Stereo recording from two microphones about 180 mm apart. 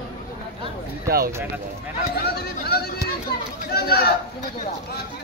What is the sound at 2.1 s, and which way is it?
Speech, 60° left (ahead or behind).